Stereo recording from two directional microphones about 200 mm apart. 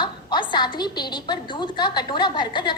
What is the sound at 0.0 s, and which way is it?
A woman's voice, 25° left (ahead or behind).